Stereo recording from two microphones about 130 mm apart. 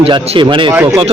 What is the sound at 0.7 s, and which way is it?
Speech, 20° right (ahead or behind).